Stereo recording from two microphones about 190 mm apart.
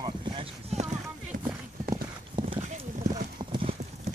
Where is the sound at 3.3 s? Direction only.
30° right (ahead or behind).